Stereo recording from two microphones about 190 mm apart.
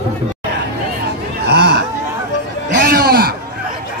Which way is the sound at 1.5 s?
60° right (ahead or behind).